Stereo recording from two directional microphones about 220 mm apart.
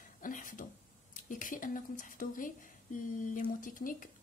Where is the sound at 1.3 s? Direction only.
35° left (ahead or behind).